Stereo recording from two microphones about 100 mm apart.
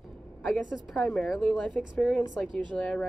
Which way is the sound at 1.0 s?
5° left (ahead or behind).